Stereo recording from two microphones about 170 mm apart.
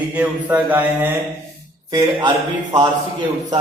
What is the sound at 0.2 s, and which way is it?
Mantra, 10° right (ahead or behind).